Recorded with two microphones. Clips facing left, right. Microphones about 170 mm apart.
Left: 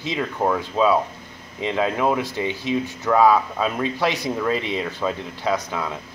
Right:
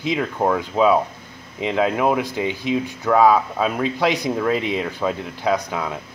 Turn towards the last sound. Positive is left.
turn(degrees=-15)  # may be behind; listen again after turning